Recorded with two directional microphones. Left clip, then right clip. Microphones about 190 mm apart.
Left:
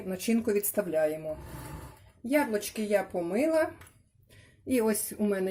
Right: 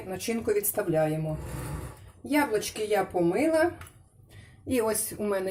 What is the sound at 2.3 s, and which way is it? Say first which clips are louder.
Speech: right 2 dB; 50° left (ahead or behind).